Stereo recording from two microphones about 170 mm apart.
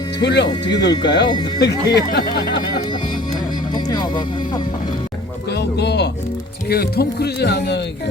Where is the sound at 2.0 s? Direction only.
55° left (ahead or behind).